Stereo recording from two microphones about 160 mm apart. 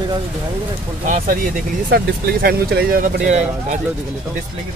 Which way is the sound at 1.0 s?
55° right (ahead or behind).